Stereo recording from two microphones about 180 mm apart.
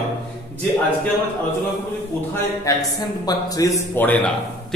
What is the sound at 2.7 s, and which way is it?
A man's voice, 15° left (ahead or behind).